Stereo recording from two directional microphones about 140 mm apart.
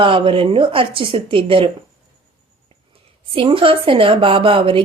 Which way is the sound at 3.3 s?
40° right (ahead or behind).